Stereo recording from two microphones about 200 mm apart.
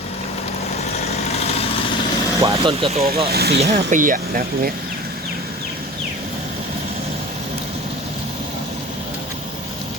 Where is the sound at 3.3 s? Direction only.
50° right (ahead or behind).